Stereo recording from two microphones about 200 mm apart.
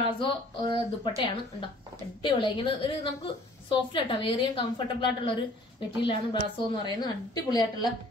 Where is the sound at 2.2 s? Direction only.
25° left (ahead or behind).